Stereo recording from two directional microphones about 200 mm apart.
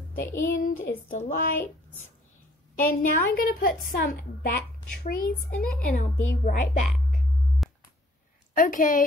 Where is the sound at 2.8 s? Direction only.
45° left (ahead or behind).